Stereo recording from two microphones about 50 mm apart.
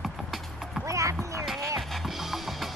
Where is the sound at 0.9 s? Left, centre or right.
Right.